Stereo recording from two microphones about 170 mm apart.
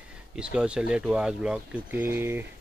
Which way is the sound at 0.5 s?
5° right (ahead or behind).